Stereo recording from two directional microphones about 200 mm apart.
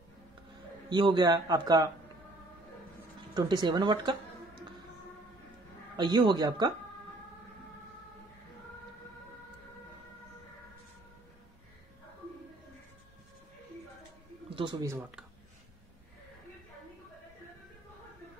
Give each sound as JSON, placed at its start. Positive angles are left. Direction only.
{"t": 0.8, "sound": "a man's voice", "side_deg": -20}
{"t": 3.3, "sound": "a man's voice", "side_deg": -20}
{"t": 5.9, "sound": "a man's voice", "side_deg": -20}
{"t": 14.5, "sound": "speech", "side_deg": -20}